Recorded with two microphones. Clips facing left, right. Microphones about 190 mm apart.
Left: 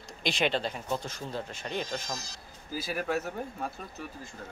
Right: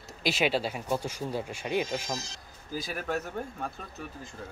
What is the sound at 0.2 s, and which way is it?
Speech, 5° right (ahead or behind).